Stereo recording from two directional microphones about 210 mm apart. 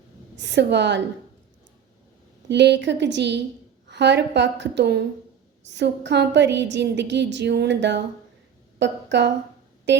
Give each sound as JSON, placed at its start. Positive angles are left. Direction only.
{"t": 0.3, "sound": "a woman's voice", "side_deg": -55}
{"t": 2.5, "sound": "a woman's voice", "side_deg": -55}